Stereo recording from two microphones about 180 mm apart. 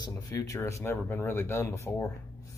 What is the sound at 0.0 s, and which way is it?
Speech, 20° left (ahead or behind).